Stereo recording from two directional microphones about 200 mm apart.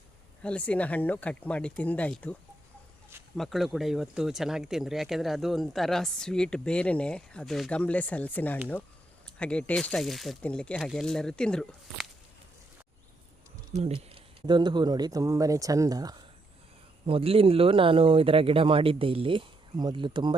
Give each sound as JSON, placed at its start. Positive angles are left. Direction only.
{"t": 0.4, "sound": "speech", "side_deg": 5}
{"t": 3.3, "sound": "speech", "side_deg": 0}
{"t": 13.7, "sound": "speech", "side_deg": -30}